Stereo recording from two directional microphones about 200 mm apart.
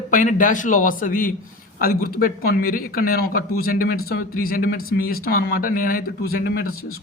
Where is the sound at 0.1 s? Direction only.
40° left (ahead or behind).